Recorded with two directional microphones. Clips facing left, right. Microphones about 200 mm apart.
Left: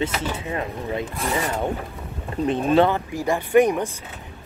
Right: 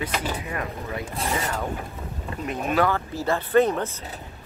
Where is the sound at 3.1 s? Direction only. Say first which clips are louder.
Left 2 dB; 15° left (ahead or behind).